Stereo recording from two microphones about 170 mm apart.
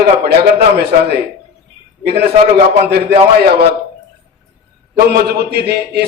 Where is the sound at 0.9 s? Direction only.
55° right (ahead or behind).